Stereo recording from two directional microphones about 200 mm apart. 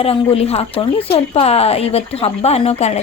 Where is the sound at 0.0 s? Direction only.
30° left (ahead or behind).